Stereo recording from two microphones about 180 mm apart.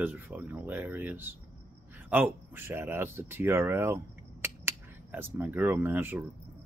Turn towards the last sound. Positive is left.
turn(degrees=-10)  # may be behind; listen again after turning